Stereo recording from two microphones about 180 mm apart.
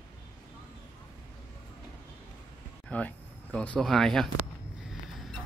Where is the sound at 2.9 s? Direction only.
5° left (ahead or behind).